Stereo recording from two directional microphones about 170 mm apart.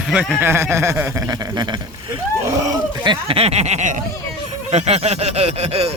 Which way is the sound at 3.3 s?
35° right (ahead or behind).